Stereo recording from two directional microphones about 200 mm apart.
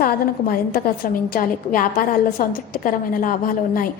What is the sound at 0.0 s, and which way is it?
A woman's voice, 50° left (ahead or behind).